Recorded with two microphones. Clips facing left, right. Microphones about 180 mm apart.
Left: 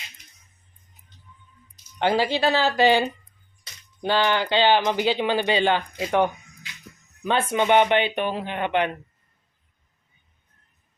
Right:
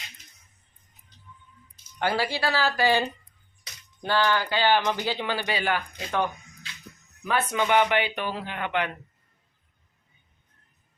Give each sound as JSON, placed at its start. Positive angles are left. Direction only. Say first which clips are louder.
{"t": 2.0, "sound": "speech", "louder": "left 5 dB", "side_deg": 20}